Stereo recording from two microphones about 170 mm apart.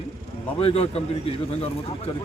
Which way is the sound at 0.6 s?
35° left (ahead or behind).